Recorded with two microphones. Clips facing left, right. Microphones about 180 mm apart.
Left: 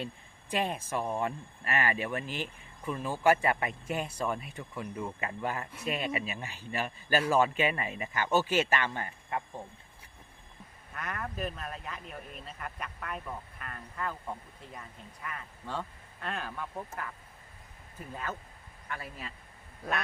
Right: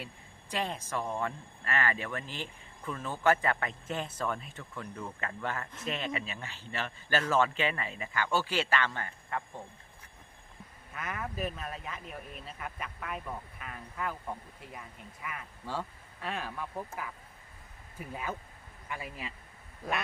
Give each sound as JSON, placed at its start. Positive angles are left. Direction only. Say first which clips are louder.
{"t": 0.5, "sound": "speech", "louder": "left 3 dB", "side_deg": 15}
{"t": 10.9, "sound": "speech", "louder": "even", "side_deg": 0}